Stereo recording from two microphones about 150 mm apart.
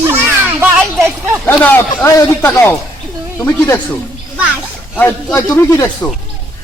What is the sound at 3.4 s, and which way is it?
Speech, 25° left (ahead or behind).